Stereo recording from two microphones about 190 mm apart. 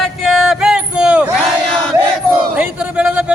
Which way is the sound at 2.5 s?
5° right (ahead or behind).